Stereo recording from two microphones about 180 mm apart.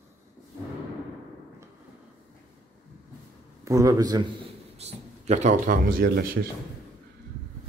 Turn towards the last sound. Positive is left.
turn(degrees=-55)  # may be behind; listen again after turning